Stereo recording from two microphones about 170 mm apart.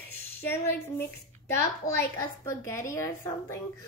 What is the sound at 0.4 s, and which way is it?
A woman's voice, 10° left (ahead or behind).